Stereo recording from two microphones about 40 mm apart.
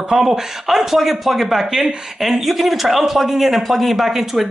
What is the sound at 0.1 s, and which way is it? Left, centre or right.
A man's voice, centre.